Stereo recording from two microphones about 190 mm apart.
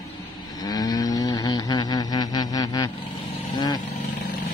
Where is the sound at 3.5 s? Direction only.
20° left (ahead or behind).